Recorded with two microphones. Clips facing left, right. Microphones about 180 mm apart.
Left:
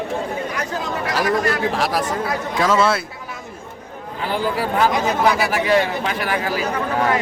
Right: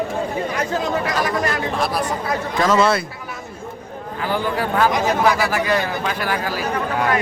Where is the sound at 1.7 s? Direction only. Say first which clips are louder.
Left 1 dB; 90° left.